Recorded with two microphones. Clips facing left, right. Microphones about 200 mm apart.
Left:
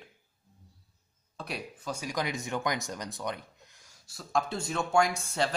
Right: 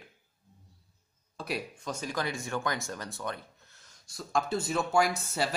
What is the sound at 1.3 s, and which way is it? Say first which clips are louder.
Speech: right 3 dB; centre (ahead or behind).